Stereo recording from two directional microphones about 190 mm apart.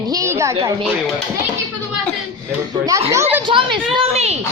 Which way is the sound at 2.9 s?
15° right (ahead or behind).